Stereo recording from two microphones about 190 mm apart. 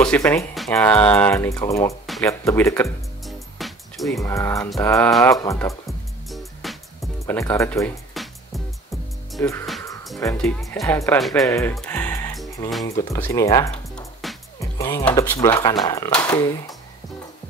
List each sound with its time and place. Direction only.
0.0 s speech: 5° left (ahead or behind)
3.3 s music: centre (ahead or behind)
4.2 s speech: 15° left (ahead or behind)
5.1 s speech: centre (ahead or behind)
5.4 s speech: 15° left (ahead or behind)
5.9 s music: centre (ahead or behind)
7.2 s speech: 15° left (ahead or behind)
9.4 s speech: 15° left (ahead or behind)
11.4 s speech: 15° left (ahead or behind)
11.7 s music: 5° left (ahead or behind)
13.1 s speech: 15° left (ahead or behind)
14.2 s music: centre (ahead or behind)
14.6 s speech: 15° left (ahead or behind)